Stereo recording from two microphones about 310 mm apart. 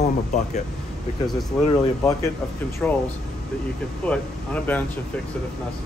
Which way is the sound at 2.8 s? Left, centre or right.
Centre.